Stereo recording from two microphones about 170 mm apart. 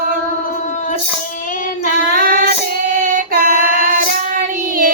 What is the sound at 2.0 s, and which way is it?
Child singing, 55° right (ahead or behind).